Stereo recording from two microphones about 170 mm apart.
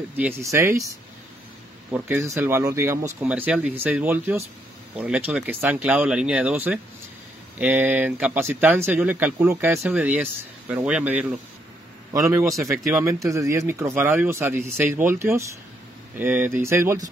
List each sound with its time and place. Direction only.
0.2 s speech: 15° right (ahead or behind)
1.9 s speech: 10° right (ahead or behind)
12.1 s a man's voice: 20° right (ahead or behind)